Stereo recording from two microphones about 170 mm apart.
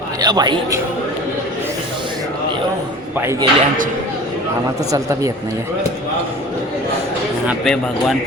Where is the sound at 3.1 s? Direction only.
15° right (ahead or behind).